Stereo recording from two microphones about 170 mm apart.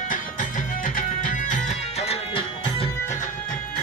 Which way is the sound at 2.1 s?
35° left (ahead or behind).